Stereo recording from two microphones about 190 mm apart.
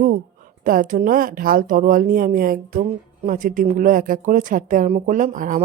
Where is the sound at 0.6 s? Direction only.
45° right (ahead or behind).